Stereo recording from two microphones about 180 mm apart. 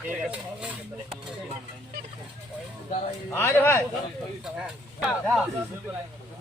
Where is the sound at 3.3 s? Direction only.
15° left (ahead or behind).